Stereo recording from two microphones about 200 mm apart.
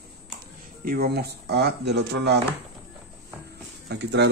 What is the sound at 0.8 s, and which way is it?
Speech, 45° right (ahead or behind).